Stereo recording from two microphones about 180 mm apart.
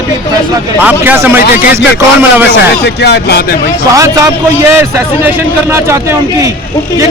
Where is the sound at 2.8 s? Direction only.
65° left (ahead or behind).